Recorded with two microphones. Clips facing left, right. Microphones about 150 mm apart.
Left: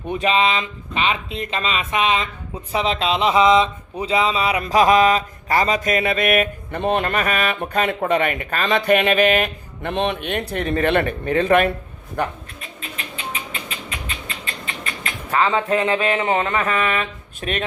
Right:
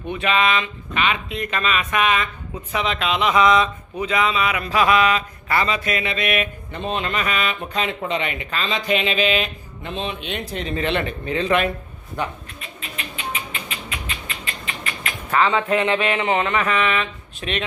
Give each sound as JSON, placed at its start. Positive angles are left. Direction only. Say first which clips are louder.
{"t": 0.1, "sound": "speech", "louder": "left 1 dB", "side_deg": 35}
{"t": 4.6, "sound": "a sound", "louder": "left 4 dB", "side_deg": 40}
{"t": 12.2, "sound": "speech", "louder": "left 3 dB", "side_deg": 55}
{"t": 15.0, "sound": "speech", "louder": "even", "side_deg": 30}